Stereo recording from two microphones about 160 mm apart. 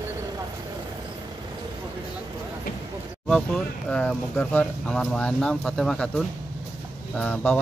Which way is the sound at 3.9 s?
5° left (ahead or behind).